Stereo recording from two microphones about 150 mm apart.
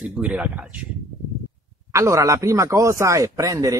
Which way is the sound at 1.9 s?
20° right (ahead or behind).